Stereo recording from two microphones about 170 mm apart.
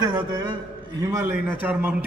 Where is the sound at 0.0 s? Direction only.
25° right (ahead or behind).